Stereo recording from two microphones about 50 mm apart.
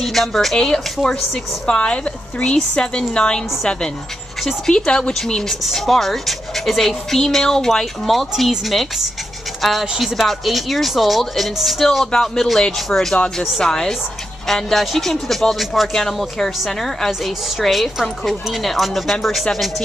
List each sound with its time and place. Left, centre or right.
0.0 s speech: centre
1.8 s speech: left; by 19.7 s centre